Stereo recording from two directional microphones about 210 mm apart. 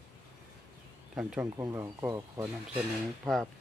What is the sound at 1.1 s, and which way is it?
Speech, 10° right (ahead or behind).